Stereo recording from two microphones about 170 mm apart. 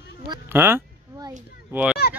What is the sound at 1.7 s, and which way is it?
Speech, 5° right (ahead or behind).